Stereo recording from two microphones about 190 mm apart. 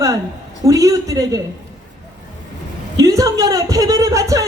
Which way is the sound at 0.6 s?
15° right (ahead or behind).